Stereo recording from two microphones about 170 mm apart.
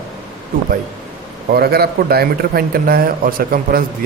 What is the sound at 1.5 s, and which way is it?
A man's voice, 65° right (ahead or behind).